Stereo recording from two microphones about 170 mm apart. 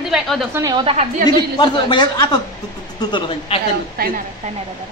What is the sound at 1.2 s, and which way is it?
Speech, 25° left (ahead or behind).